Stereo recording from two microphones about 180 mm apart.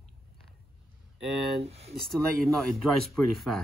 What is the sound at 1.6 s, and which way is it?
Speech, 35° right (ahead or behind).